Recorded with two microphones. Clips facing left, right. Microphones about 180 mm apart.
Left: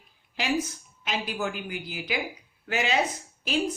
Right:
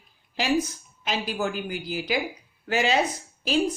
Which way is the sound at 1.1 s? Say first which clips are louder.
Right 3 dB; 35° right (ahead or behind).